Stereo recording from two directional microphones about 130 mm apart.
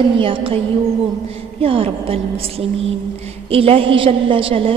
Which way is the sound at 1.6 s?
45° right (ahead or behind).